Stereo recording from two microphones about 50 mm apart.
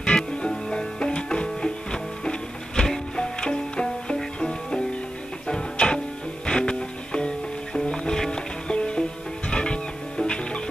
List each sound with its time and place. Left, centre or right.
0.0 s music: centre